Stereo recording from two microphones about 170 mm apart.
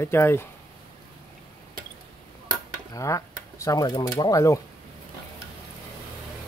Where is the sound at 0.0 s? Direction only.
15° left (ahead or behind).